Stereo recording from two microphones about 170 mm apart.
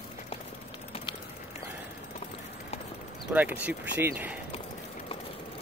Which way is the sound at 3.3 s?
10° right (ahead or behind).